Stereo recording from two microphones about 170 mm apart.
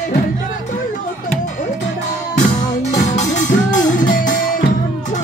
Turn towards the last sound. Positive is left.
turn(degrees=50)  # may be behind; listen again after turning